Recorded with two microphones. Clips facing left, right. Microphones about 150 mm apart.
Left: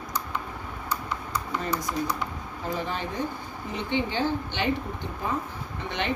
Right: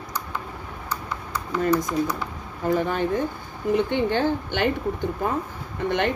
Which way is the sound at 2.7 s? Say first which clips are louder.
Right 9 dB; 50° right (ahead or behind).